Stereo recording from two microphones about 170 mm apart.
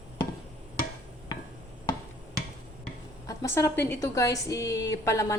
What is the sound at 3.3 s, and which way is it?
A woman's voice, 20° left (ahead or behind).